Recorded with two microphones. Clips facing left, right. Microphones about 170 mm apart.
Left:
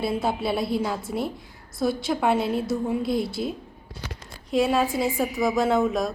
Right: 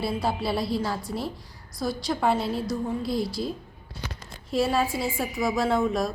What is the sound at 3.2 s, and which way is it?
Speech, 55° left (ahead or behind).